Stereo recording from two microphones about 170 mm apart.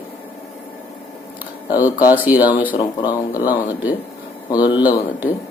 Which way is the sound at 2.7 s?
25° left (ahead or behind).